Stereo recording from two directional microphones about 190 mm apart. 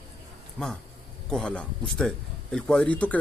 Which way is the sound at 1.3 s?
5° left (ahead or behind).